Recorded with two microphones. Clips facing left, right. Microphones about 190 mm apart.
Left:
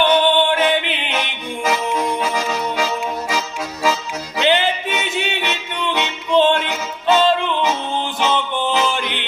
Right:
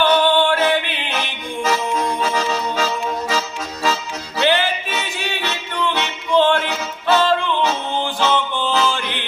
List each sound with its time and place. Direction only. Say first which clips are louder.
0.0 s music: even; 20° left (ahead or behind)
2.3 s accordion: even; 10° left (ahead or behind)
4.4 s music: left 1 dB; 20° left (ahead or behind)